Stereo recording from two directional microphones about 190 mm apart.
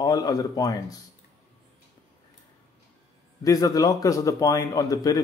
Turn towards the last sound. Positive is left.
turn(degrees=20)  # may be behind; listen again after turning